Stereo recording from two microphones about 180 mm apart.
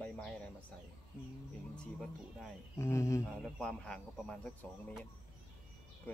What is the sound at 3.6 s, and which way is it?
Speech, 5° left (ahead or behind).